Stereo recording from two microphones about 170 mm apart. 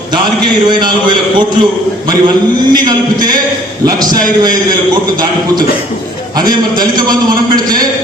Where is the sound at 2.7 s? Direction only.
25° right (ahead or behind).